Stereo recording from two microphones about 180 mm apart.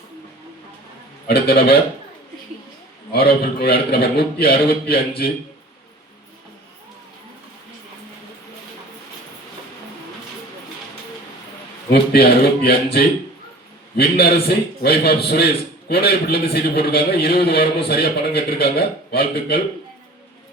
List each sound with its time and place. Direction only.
1.3 s a man's voice: 60° left (ahead or behind)
3.1 s a man's voice: 60° left (ahead or behind)
11.9 s a man's voice: 60° left (ahead or behind)